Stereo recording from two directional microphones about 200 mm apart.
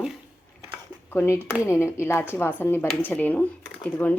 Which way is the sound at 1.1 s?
10° left (ahead or behind).